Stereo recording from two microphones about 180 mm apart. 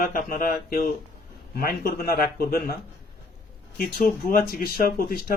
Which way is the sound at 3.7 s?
55° left (ahead or behind).